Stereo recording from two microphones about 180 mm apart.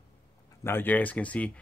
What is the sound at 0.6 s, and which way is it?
Speech, 10° left (ahead or behind).